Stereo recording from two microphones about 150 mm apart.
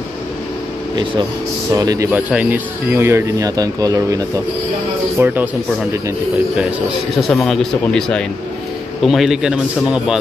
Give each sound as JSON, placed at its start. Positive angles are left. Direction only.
{"t": 1.7, "sound": "speech", "side_deg": -20}
{"t": 2.0, "sound": "speech", "side_deg": -10}
{"t": 5.2, "sound": "speech", "side_deg": -15}
{"t": 7.2, "sound": "speech", "side_deg": 0}